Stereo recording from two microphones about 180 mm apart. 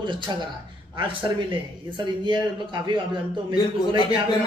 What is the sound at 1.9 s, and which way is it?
A man's voice, 25° right (ahead or behind).